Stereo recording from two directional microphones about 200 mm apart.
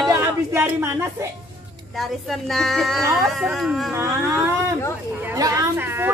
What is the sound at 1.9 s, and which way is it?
A woman's voice, centre (ahead or behind).